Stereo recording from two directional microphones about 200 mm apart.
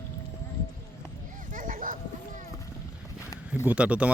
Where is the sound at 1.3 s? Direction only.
40° right (ahead or behind).